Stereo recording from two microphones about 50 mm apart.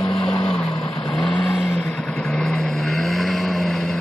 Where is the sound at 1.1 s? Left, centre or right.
Centre.